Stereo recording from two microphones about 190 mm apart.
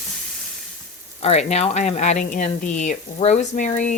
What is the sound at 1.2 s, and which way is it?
Speech, 35° left (ahead or behind).